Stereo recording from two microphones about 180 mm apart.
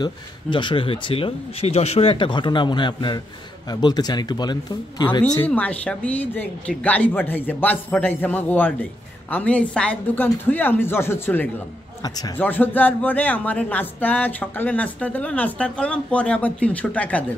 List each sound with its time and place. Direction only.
0.0 s speech: 25° left (ahead or behind)
5.5 s speech: 5° left (ahead or behind)